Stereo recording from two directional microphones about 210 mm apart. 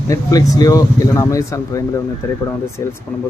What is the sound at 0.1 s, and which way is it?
Speech, 15° left (ahead or behind).